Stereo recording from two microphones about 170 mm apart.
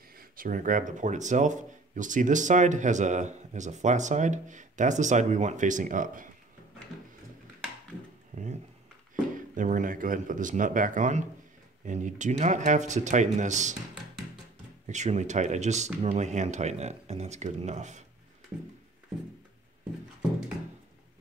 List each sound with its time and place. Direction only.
0.1 s speech: 55° right (ahead or behind)
8.3 s speech: 45° right (ahead or behind)
9.6 s speech: 50° right (ahead or behind)
14.9 s speech: 45° right (ahead or behind)